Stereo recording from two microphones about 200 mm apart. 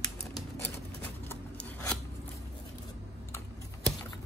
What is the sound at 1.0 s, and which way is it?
Scissors, 10° left (ahead or behind).